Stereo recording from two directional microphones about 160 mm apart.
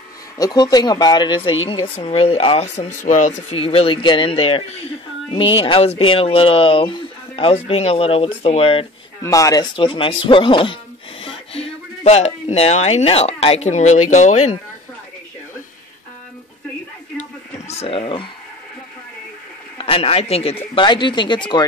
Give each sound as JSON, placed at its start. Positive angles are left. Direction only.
{"t": 0.4, "sound": "speech", "side_deg": 25}
{"t": 9.2, "sound": "speech", "side_deg": 20}
{"t": 9.8, "sound": "speech", "side_deg": 30}
{"t": 17.2, "sound": "a sound", "side_deg": 40}
{"t": 19.8, "sound": "speech", "side_deg": 35}